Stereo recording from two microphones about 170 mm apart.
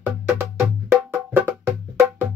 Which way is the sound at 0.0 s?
10° right (ahead or behind).